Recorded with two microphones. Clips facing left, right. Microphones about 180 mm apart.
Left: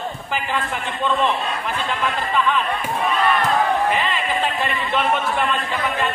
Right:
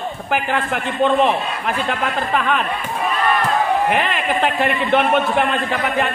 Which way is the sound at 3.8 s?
65° right (ahead or behind).